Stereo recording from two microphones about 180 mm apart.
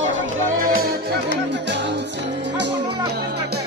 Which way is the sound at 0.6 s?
55° right (ahead or behind).